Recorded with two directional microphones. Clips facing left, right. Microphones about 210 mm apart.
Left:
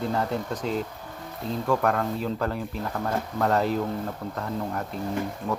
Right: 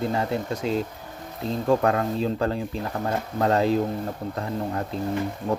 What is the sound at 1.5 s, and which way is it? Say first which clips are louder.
Speech: right 3 dB; 25° right (ahead or behind).